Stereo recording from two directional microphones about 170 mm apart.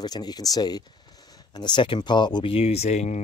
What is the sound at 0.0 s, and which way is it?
Speech, 25° left (ahead or behind).